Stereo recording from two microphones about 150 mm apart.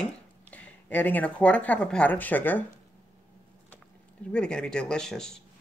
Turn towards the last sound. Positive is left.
turn(degrees=5)  # may be behind; listen again after turning